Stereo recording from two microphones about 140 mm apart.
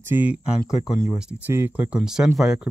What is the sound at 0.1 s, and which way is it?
Speech, 10° right (ahead or behind).